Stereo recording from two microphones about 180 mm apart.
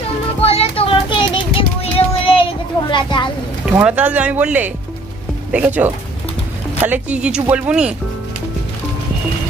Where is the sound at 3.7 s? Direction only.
10° right (ahead or behind).